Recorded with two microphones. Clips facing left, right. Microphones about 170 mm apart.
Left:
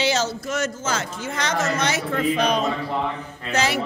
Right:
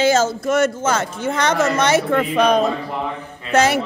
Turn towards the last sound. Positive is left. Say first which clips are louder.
# right 7 dB
turn(degrees=-50)  # may be behind; listen again after turning